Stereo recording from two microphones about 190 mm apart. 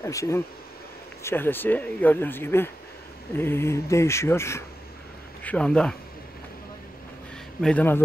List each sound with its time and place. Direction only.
0.0 s speech: 15° left (ahead or behind)
7.6 s speech: 10° left (ahead or behind)